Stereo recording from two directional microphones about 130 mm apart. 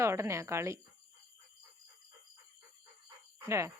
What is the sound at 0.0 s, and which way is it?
Speech, 20° right (ahead or behind).